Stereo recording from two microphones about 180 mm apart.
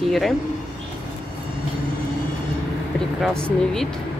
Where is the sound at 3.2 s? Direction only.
5° left (ahead or behind).